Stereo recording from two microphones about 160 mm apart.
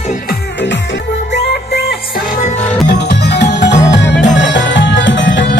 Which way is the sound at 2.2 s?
55° left (ahead or behind).